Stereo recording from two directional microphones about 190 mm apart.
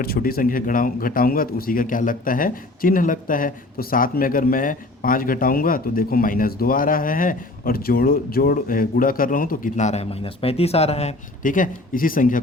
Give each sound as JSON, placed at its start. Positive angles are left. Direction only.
{"t": 0.0, "sound": "a man's voice", "side_deg": 50}